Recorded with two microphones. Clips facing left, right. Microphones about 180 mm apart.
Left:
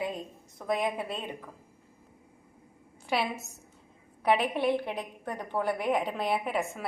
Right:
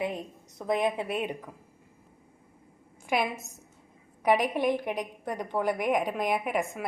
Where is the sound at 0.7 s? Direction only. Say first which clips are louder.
Right 3 dB; 20° right (ahead or behind).